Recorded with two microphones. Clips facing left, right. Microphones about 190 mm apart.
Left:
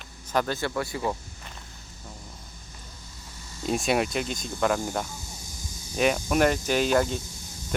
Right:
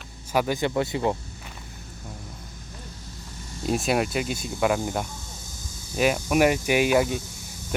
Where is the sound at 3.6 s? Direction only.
Centre (ahead or behind).